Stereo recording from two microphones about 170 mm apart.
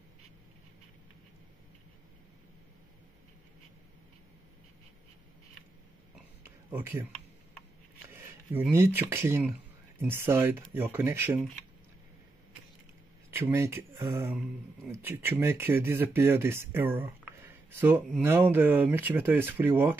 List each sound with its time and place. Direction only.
6.4 s a sound: 15° right (ahead or behind)
8.7 s speech: 15° right (ahead or behind)
13.3 s speech: 15° right (ahead or behind)